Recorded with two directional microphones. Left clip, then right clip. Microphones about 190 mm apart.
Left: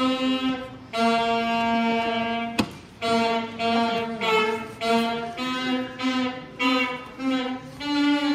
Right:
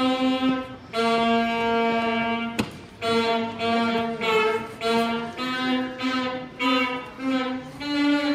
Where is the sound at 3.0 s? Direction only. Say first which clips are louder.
Even; centre (ahead or behind).